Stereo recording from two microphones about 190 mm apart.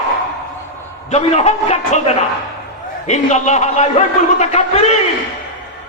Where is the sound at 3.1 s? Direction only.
40° left (ahead or behind).